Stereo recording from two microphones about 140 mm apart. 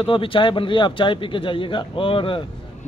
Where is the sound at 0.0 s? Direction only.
40° left (ahead or behind).